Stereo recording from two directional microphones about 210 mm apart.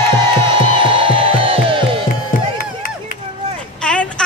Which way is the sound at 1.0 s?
25° right (ahead or behind).